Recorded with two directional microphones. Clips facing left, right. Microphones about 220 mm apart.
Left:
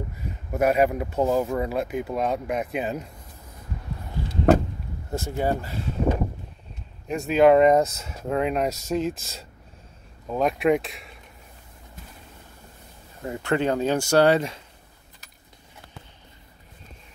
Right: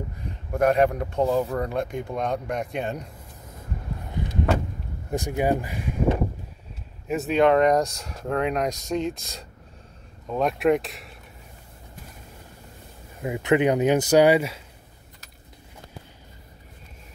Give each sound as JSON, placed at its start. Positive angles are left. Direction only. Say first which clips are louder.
{"t": 0.2, "sound": "speech", "louder": "right 1 dB", "side_deg": 5}
{"t": 4.2, "sound": "vehicle", "louder": "right 1 dB", "side_deg": -20}
{"t": 5.1, "sound": "speech", "louder": "right 2 dB", "side_deg": -15}
{"t": 7.1, "sound": "speech", "louder": "left 2 dB", "side_deg": 0}
{"t": 13.2, "sound": "speech", "louder": "right 4 dB", "side_deg": -15}